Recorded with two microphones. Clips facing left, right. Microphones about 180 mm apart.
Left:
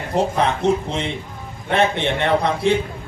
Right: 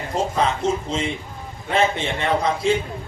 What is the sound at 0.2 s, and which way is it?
A man's voice, 65° left (ahead or behind).